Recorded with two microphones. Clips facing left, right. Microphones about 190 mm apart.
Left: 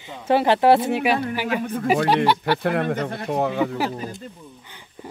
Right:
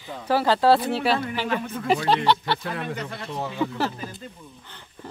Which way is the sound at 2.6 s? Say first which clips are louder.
Left 8 dB; 60° left (ahead or behind).